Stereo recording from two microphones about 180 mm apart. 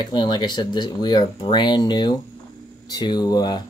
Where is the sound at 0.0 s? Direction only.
25° left (ahead or behind).